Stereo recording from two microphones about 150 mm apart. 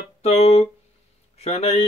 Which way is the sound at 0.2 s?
45° left (ahead or behind).